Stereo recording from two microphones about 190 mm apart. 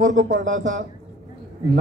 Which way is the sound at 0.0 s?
40° right (ahead or behind).